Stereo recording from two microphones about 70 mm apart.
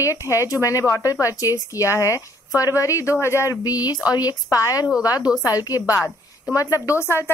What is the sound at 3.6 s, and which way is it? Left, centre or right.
A woman's voice, left.